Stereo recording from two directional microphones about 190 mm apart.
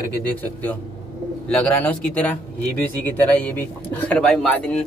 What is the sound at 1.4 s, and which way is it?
Speech, 5° left (ahead or behind).